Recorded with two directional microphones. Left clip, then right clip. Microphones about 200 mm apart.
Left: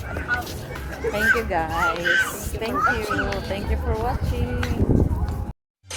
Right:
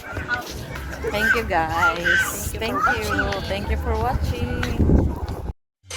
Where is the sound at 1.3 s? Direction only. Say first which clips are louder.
Right 2 dB; 10° right (ahead or behind).